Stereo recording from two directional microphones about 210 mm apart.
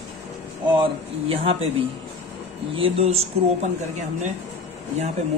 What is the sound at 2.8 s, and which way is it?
Speech, 30° right (ahead or behind).